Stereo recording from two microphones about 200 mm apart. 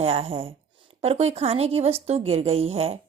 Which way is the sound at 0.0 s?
30° right (ahead or behind).